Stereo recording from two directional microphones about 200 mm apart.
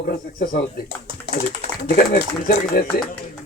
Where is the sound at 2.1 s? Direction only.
50° left (ahead or behind).